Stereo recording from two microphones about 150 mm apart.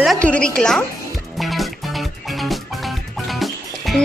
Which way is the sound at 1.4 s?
Centre (ahead or behind).